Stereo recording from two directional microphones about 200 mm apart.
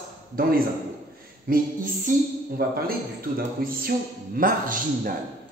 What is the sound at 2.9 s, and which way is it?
A man's voice, 45° right (ahead or behind).